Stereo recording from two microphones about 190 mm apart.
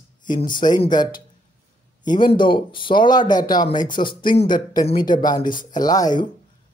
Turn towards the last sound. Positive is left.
turn(degrees=20)  # may be behind; listen again after turning